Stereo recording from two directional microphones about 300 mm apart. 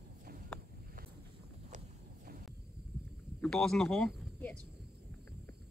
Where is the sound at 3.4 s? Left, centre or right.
Centre.